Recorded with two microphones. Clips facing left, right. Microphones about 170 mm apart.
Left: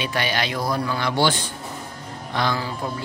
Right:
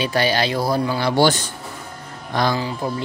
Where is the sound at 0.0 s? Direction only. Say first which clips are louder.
Right 5 dB; 35° right (ahead or behind).